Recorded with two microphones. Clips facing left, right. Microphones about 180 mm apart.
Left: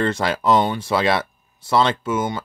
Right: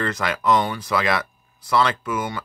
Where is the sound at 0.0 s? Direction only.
30° left (ahead or behind).